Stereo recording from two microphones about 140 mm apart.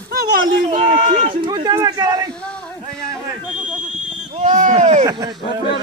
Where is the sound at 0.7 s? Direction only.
45° right (ahead or behind).